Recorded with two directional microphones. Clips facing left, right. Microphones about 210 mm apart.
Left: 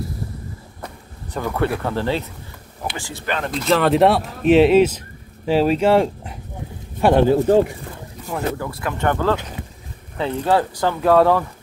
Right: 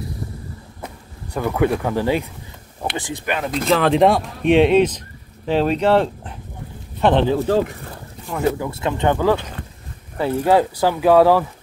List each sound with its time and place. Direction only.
1.3 s speech: 10° right (ahead or behind)
3.6 s speech: centre (ahead or behind)
8.5 s speech: 25° right (ahead or behind); by 11.4 s 5° right (ahead or behind)